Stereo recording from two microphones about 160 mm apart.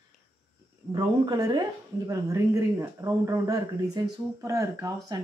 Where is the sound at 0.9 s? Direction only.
25° right (ahead or behind).